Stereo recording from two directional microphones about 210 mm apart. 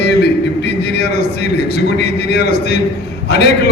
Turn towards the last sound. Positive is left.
turn(degrees=50)  # may be behind; listen again after turning